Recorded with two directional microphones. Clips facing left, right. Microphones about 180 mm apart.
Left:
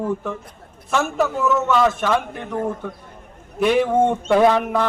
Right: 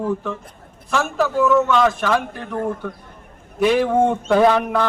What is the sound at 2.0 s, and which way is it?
Speech, 20° left (ahead or behind).